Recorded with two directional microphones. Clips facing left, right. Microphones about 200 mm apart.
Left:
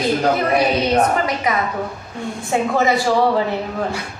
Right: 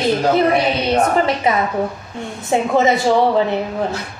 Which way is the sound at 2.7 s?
20° right (ahead or behind).